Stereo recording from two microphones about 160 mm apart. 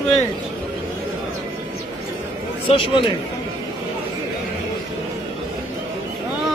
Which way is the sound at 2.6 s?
30° left (ahead or behind).